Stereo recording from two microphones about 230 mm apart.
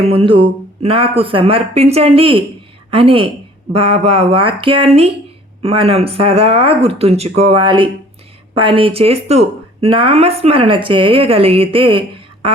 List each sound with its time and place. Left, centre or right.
0.0 s speech: right